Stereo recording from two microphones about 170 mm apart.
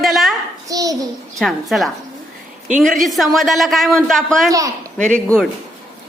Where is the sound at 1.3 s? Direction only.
Centre (ahead or behind).